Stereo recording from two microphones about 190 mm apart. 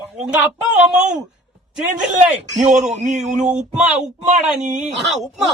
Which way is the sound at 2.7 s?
40° right (ahead or behind).